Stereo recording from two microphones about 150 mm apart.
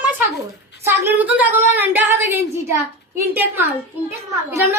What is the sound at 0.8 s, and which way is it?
A woman's voice, 15° right (ahead or behind).